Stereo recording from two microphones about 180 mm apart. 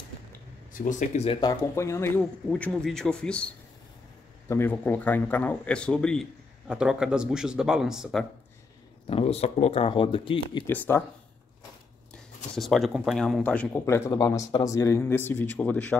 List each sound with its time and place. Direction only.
0.7 s speech: 45° left (ahead or behind)
1.4 s a man's voice: 20° left (ahead or behind); by 8.3 s centre (ahead or behind)
9.0 s speech: 35° left (ahead or behind)
10.7 s a man's voice: 10° left (ahead or behind)
12.5 s a man's voice: centre (ahead or behind)